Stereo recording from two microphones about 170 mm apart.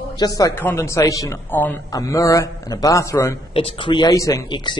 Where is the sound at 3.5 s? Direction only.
35° left (ahead or behind).